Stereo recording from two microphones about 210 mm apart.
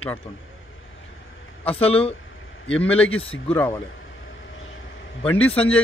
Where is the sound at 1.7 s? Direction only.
25° left (ahead or behind).